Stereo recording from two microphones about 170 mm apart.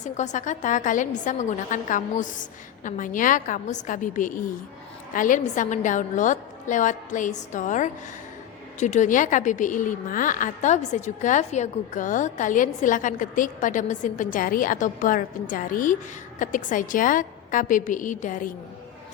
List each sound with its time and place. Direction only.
0.0 s a woman's voice: 45° left (ahead or behind)